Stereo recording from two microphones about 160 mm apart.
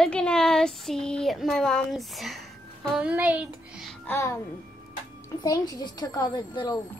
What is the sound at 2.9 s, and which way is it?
Speech, 10° right (ahead or behind).